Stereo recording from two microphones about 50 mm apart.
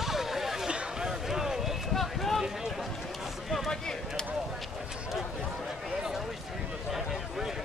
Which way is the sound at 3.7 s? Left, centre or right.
Centre.